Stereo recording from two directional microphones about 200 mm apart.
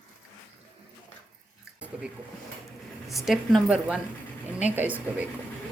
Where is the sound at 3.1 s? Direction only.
Centre (ahead or behind).